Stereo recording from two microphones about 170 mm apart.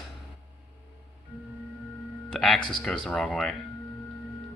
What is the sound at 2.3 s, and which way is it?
Speech, centre (ahead or behind).